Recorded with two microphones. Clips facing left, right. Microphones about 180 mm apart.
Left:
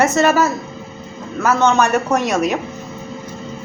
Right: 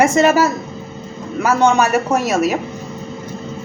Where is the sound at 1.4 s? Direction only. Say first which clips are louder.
Right 1 dB; 10° right (ahead or behind).